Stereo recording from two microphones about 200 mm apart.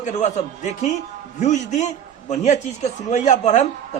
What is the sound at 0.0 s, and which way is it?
Speech, 35° left (ahead or behind).